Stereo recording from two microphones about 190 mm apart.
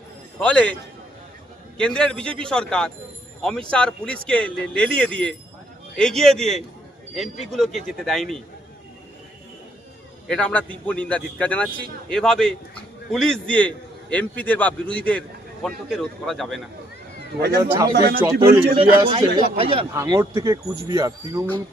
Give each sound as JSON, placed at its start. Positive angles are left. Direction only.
{"t": 0.3, "sound": "a man's voice", "side_deg": 5}
{"t": 1.8, "sound": "speech", "side_deg": 5}
{"t": 10.2, "sound": "a man's voice", "side_deg": 5}
{"t": 17.2, "sound": "speech", "side_deg": -55}
{"t": 17.6, "sound": "speech", "side_deg": -20}
{"t": 17.9, "sound": "a man's voice", "side_deg": -55}
{"t": 18.8, "sound": "a man's voice", "side_deg": -25}
{"t": 19.9, "sound": "speech", "side_deg": -15}